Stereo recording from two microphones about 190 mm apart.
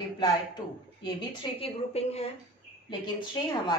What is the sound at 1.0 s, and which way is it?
A woman's voice, 30° left (ahead or behind).